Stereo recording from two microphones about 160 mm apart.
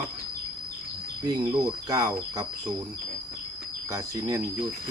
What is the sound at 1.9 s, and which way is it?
Speech, 20° right (ahead or behind).